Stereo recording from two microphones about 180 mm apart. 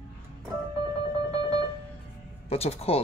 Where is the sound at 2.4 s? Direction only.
35° left (ahead or behind).